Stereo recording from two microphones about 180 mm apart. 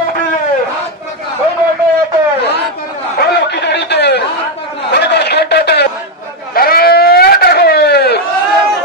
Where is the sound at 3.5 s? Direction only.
70° left (ahead or behind).